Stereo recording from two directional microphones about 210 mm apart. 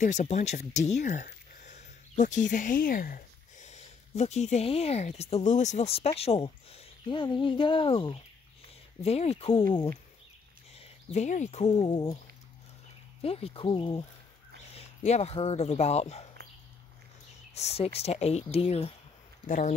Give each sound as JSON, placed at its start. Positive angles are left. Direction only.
{"t": 0.0, "sound": "speech", "side_deg": 35}
{"t": 10.7, "sound": "speech", "side_deg": 30}
{"t": 13.2, "sound": "speech", "side_deg": 25}
{"t": 17.6, "sound": "speech", "side_deg": 30}